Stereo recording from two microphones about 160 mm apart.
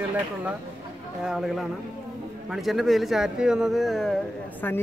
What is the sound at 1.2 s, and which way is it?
Speech, 5° right (ahead or behind).